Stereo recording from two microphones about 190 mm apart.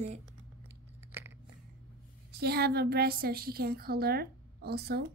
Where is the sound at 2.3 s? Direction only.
55° right (ahead or behind).